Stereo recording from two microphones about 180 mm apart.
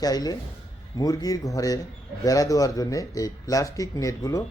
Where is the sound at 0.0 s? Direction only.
20° left (ahead or behind).